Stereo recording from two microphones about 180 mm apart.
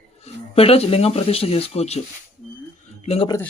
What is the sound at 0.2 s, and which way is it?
Speech, 35° left (ahead or behind).